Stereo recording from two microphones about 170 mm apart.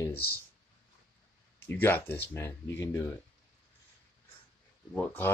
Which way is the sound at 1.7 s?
10° left (ahead or behind).